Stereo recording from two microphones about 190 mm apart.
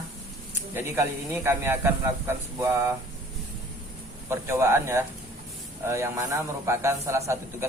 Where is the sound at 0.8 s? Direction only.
15° right (ahead or behind).